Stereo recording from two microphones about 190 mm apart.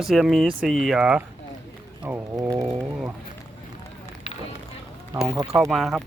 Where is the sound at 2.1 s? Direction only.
15° right (ahead or behind).